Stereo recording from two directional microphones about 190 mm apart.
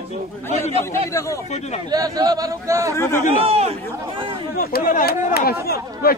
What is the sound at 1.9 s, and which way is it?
A man's voice, 20° right (ahead or behind).